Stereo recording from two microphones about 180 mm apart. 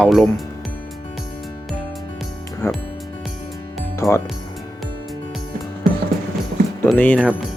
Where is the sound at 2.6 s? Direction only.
15° left (ahead or behind).